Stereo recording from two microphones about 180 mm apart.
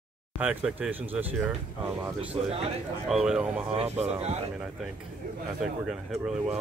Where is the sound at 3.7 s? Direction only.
35° right (ahead or behind).